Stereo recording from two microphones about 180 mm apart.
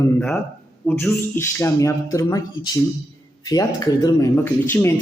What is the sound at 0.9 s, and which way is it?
Speech, 10° left (ahead or behind).